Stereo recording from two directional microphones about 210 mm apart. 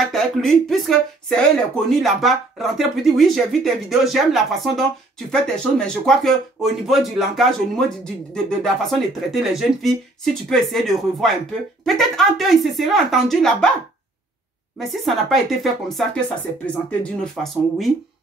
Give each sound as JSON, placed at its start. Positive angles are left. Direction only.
{"t": 0.1, "sound": "speech", "side_deg": 0}
{"t": 14.8, "sound": "speech", "side_deg": 0}